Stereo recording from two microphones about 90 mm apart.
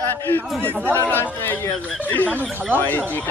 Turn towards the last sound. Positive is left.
turn(degrees=20)  # may be behind; listen again after turning